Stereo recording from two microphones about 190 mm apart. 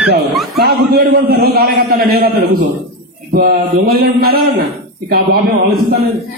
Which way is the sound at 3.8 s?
55° right (ahead or behind).